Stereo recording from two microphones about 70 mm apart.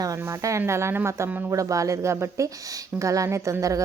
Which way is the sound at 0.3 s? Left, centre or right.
Right.